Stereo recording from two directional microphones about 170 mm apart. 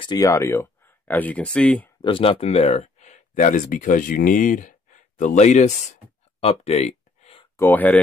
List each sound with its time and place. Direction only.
0.0 s speech: 20° left (ahead or behind)
2.0 s speech: 30° left (ahead or behind)
6.4 s a sound: 40° left (ahead or behind)
7.5 s speech: 10° left (ahead or behind)